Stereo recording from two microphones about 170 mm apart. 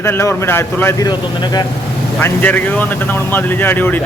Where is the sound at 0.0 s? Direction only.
15° left (ahead or behind).